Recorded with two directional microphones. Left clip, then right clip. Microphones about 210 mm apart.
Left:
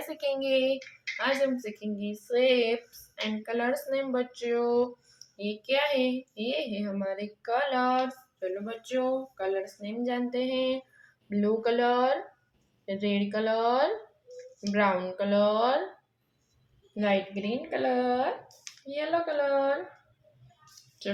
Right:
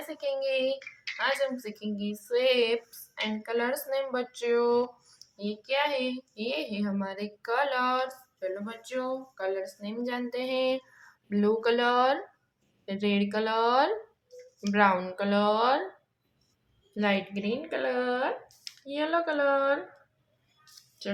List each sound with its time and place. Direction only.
0.1 s a child's voice: centre (ahead or behind); by 4.9 s 25° right (ahead or behind)
5.4 s a child's voice: 15° right (ahead or behind); by 15.8 s 30° right (ahead or behind)
16.9 s a child's voice: 30° right (ahead or behind)